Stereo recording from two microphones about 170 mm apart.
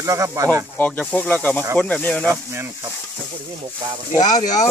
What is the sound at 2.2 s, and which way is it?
Speech, 15° right (ahead or behind).